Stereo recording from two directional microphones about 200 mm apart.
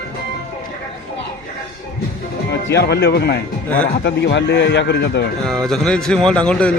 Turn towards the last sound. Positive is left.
turn(degrees=5)  # may be behind; listen again after turning